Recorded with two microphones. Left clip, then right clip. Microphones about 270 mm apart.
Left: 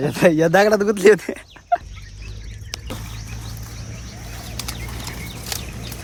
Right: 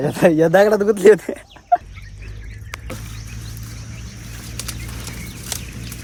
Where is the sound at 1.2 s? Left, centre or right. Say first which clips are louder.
Right 2 dB; centre.